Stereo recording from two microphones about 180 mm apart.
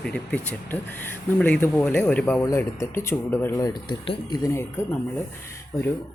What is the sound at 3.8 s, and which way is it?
Speech, 30° left (ahead or behind).